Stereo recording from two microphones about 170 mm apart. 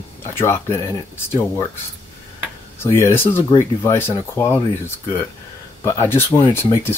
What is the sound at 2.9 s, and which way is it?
Speech, 15° left (ahead or behind).